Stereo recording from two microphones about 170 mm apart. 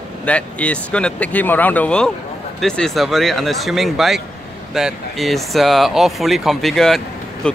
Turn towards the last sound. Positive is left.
turn(degrees=5)  # may be behind; listen again after turning